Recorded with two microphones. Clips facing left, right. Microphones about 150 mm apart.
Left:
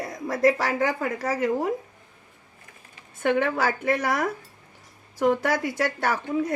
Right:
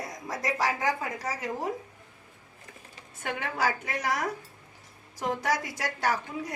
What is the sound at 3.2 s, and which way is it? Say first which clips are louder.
A woman's voice: left 7 dB; 60° left (ahead or behind).